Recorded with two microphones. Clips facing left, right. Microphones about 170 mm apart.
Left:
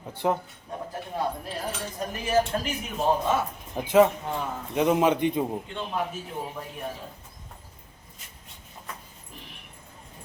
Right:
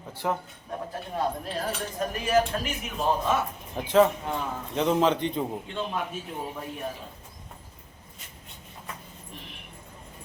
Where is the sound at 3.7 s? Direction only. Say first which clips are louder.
Left 1 dB; 15° left (ahead or behind).